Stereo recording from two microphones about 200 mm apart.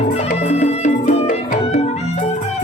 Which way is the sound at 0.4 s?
35° left (ahead or behind).